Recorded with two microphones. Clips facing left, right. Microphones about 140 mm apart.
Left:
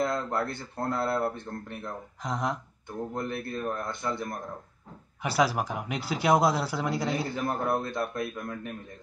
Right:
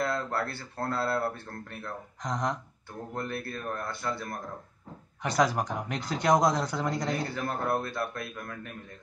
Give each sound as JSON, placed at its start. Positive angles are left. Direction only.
{"t": 0.0, "sound": "speech", "side_deg": 20}
{"t": 2.2, "sound": "speech", "side_deg": 5}
{"t": 3.2, "sound": "speech", "side_deg": 20}
{"t": 5.2, "sound": "speech", "side_deg": 5}
{"t": 7.3, "sound": "speech", "side_deg": 20}